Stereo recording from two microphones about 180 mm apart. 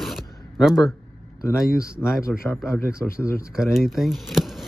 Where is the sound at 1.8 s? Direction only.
15° left (ahead or behind).